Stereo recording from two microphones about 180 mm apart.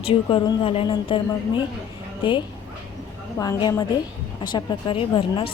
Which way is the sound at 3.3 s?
20° left (ahead or behind).